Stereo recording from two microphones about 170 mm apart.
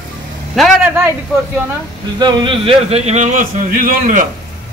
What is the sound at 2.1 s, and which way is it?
Speech, 25° right (ahead or behind).